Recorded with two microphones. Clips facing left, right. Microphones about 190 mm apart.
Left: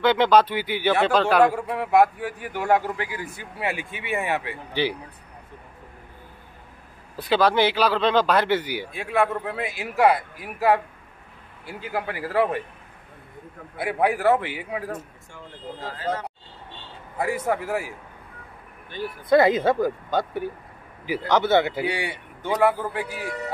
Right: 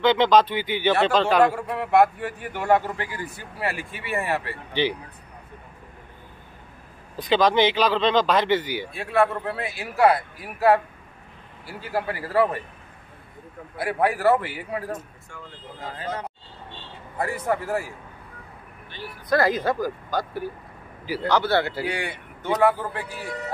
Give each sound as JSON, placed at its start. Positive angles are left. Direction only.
{"t": 0.0, "sound": "speech", "side_deg": 10}
{"t": 7.2, "sound": "speech", "side_deg": 10}
{"t": 13.7, "sound": "a man's voice", "side_deg": 0}
{"t": 14.1, "sound": "speech", "side_deg": 15}
{"t": 17.2, "sound": "speech", "side_deg": 10}
{"t": 19.2, "sound": "speech", "side_deg": 25}